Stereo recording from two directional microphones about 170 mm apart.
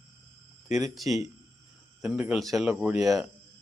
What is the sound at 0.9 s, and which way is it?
Speech, centre (ahead or behind).